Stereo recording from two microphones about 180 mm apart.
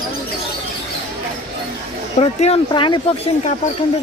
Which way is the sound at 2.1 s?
35° left (ahead or behind).